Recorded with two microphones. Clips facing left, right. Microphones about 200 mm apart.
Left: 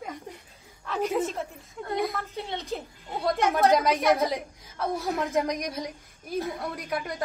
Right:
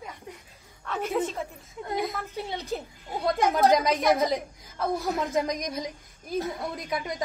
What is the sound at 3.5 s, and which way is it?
Speech, centre (ahead or behind).